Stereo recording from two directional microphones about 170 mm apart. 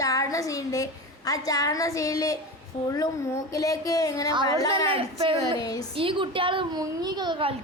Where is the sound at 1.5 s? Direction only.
20° left (ahead or behind).